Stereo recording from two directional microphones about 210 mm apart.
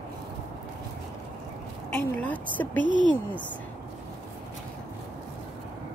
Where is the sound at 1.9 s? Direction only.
10° left (ahead or behind).